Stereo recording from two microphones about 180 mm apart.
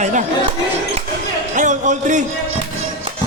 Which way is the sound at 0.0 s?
40° right (ahead or behind).